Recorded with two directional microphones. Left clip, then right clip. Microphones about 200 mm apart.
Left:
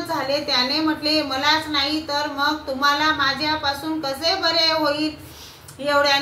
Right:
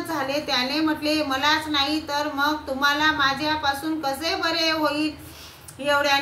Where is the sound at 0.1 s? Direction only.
15° right (ahead or behind).